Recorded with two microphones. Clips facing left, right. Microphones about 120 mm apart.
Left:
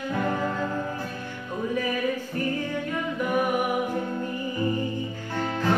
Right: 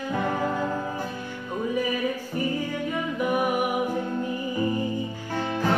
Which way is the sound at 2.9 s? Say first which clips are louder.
Right 2 dB; 10° right (ahead or behind).